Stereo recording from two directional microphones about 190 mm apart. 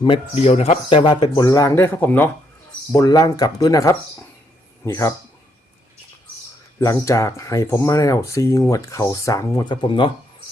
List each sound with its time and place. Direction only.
0.0 s speech: 30° left (ahead or behind)
6.7 s speech: 20° left (ahead or behind)